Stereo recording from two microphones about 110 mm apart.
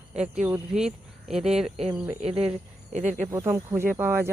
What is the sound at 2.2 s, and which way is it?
Speech, 60° right (ahead or behind).